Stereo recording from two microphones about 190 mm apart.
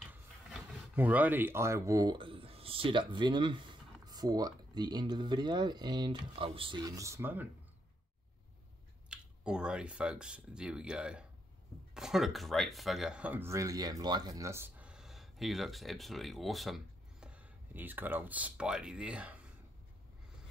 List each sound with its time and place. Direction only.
0.1 s speech: 10° right (ahead or behind)
9.1 s speech: 5° right (ahead or behind)